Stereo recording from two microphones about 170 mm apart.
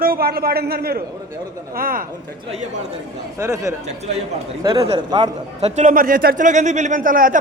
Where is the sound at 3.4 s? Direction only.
15° right (ahead or behind).